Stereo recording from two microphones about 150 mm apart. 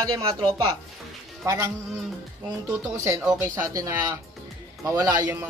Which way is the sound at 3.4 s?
20° right (ahead or behind).